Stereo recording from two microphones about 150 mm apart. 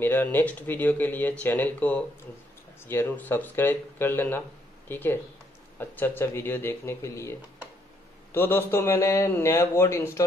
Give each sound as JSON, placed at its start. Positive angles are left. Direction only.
{"t": 0.0, "sound": "a man's voice", "side_deg": 15}